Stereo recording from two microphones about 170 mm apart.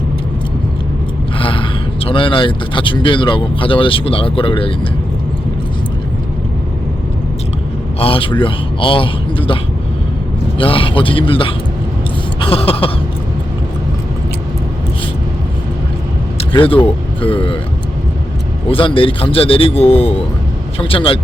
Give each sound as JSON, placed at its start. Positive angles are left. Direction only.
{"t": 1.4, "sound": "gasp", "side_deg": 30}
{"t": 2.0, "sound": "speech", "side_deg": 30}
{"t": 7.9, "sound": "speech", "side_deg": 35}
{"t": 10.6, "sound": "speech", "side_deg": 30}
{"t": 12.4, "sound": "a sound", "side_deg": 35}
{"t": 16.4, "sound": "vehicle", "side_deg": 30}
{"t": 16.8, "sound": "speech", "side_deg": 30}
{"t": 18.7, "sound": "speech", "side_deg": 30}